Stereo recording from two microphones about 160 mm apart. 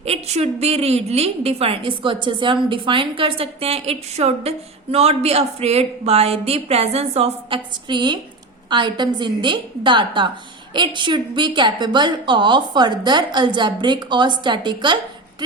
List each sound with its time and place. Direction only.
0.0 s a woman's voice: 40° right (ahead or behind)